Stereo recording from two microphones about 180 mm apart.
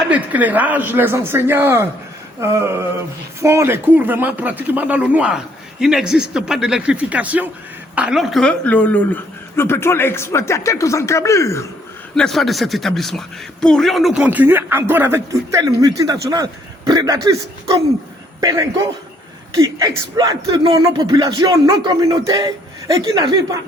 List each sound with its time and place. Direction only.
0.1 s speech: 10° right (ahead or behind); by 11.6 s 15° left (ahead or behind)
12.1 s speech: centre (ahead or behind); by 23.3 s 20° right (ahead or behind)